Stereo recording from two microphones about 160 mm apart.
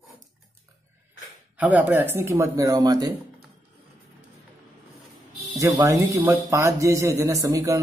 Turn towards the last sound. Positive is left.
turn(degrees=-20)  # may be behind; listen again after turning